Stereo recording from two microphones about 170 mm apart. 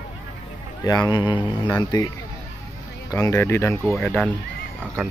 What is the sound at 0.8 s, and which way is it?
A man's voice, 25° left (ahead or behind).